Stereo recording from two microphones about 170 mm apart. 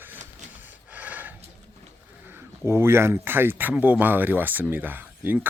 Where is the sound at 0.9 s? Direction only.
10° right (ahead or behind).